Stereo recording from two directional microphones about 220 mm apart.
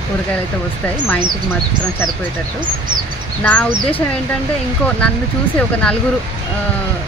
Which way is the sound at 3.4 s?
5° left (ahead or behind).